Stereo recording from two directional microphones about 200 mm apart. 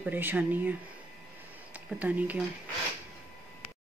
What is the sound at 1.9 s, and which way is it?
Speech, 10° right (ahead or behind).